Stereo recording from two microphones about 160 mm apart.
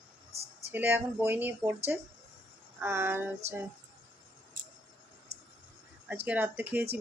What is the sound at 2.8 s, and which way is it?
Speech, 15° right (ahead or behind).